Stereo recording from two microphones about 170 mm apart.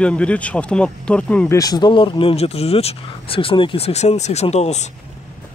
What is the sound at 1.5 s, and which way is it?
Speech, 20° left (ahead or behind).